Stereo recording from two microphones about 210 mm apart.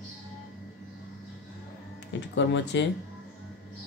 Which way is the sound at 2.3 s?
60° left (ahead or behind).